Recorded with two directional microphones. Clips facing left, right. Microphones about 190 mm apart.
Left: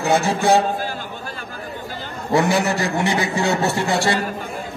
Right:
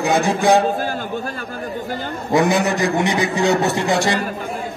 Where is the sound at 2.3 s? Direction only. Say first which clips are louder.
Right 2 dB; 20° right (ahead or behind).